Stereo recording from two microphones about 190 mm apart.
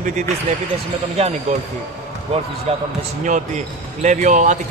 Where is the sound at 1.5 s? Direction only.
35° right (ahead or behind).